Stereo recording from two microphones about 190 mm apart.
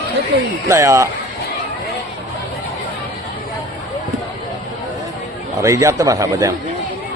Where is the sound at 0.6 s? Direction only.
15° right (ahead or behind).